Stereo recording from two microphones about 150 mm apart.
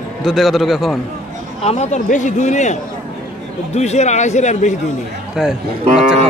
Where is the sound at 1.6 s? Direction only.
45° left (ahead or behind).